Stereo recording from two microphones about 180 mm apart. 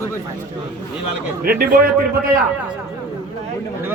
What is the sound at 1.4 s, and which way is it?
Speech, 55° right (ahead or behind).